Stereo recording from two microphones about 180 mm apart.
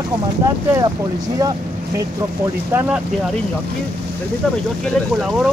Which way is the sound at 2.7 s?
10° right (ahead or behind).